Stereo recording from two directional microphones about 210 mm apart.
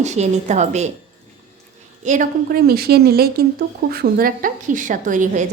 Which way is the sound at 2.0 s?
35° right (ahead or behind).